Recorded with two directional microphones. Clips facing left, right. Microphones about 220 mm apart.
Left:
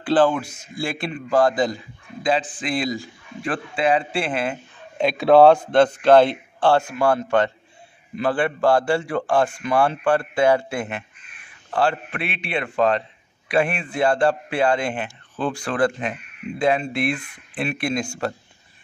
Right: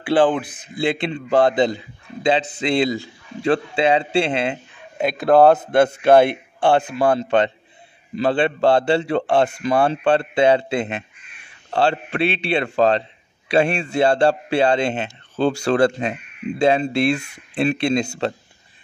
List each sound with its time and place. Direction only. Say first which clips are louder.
0.0 s a man's voice: right 1 dB; 15° right (ahead or behind)
4.9 s speech: left 1 dB; centre (ahead or behind); by 9.5 s 25° right (ahead or behind)
9.5 s speech: right 3 dB; 35° right (ahead or behind)
9.8 s speech: right 2 dB; 25° right (ahead or behind)